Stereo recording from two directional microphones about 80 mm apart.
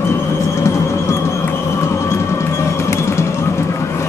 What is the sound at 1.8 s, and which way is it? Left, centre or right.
Music, left.